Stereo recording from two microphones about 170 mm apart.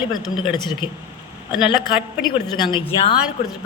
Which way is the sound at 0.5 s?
25° left (ahead or behind).